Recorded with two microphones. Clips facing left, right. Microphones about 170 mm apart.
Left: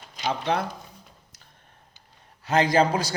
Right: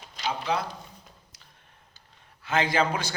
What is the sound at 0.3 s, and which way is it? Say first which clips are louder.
Speech: left 3 dB; 55° left (ahead or behind).